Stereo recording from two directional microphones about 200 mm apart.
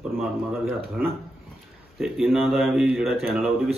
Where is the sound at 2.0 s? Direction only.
Centre (ahead or behind).